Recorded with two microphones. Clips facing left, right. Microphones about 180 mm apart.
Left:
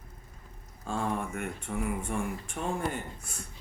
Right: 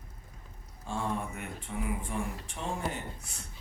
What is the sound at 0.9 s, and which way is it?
A woman's voice, 50° left (ahead or behind).